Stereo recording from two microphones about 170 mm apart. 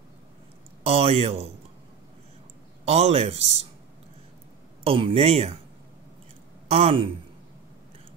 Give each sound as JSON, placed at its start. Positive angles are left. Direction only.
{"t": 0.8, "sound": "a man's voice", "side_deg": -35}
{"t": 2.8, "sound": "a man's voice", "side_deg": -40}
{"t": 4.8, "sound": "a man's voice", "side_deg": -35}
{"t": 6.7, "sound": "a man's voice", "side_deg": -35}